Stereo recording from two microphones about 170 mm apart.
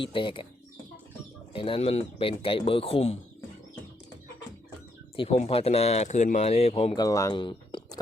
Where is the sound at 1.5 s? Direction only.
30° left (ahead or behind).